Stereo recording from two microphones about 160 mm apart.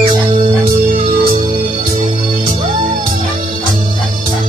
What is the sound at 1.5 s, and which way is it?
Music, 45° right (ahead or behind).